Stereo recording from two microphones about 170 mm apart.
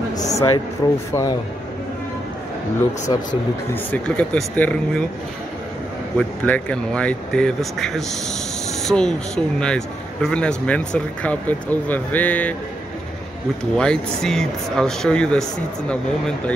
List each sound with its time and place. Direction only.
0.2 s speech: 20° left (ahead or behind)
3.7 s speech: 10° left (ahead or behind)
6.1 s speech: 10° left (ahead or behind)
13.7 s speech: 5° left (ahead or behind)